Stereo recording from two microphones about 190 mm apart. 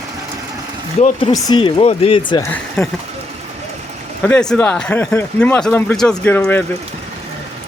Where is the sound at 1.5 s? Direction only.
25° left (ahead or behind).